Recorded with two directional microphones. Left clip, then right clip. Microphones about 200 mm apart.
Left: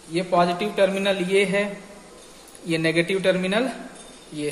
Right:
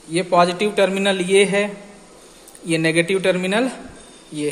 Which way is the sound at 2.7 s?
25° right (ahead or behind).